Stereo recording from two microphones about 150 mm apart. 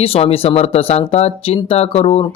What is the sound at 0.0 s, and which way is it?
Speech, 40° left (ahead or behind).